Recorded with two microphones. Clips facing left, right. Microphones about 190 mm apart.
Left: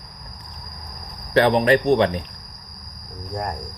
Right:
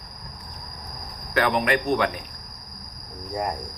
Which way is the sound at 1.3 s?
30° left (ahead or behind).